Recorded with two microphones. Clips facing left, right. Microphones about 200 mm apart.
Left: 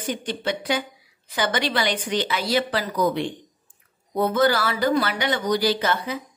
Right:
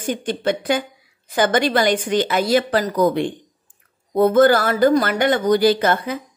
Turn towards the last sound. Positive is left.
turn(degrees=-50)  # may be behind; listen again after turning